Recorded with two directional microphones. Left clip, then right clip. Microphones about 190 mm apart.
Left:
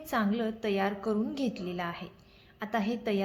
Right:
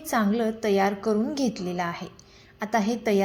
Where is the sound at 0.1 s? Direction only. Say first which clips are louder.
Right 6 dB; 15° right (ahead or behind).